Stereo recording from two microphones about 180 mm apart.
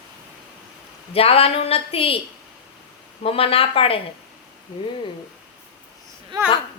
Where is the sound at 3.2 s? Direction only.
30° left (ahead or behind).